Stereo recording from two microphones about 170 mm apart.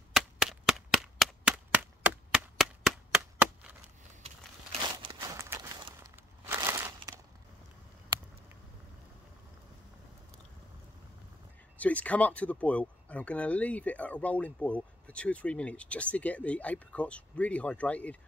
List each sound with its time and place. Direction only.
0.1 s cap gun: 5° right (ahead or behind)
5.3 s walk: 15° right (ahead or behind)
6.1 s crushing: 15° right (ahead or behind)
11.8 s speech: 10° left (ahead or behind)